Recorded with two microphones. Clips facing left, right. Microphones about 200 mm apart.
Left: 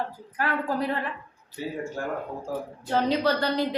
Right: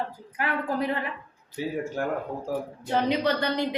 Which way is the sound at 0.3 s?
15° right (ahead or behind).